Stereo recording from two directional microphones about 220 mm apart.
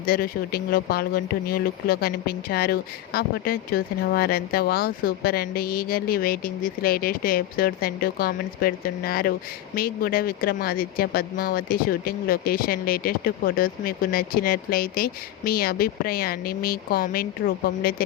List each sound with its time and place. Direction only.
0.0 s speech: 40° left (ahead or behind)